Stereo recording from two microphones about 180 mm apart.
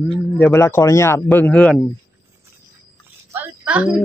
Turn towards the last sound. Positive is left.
turn(degrees=-5)  # may be behind; listen again after turning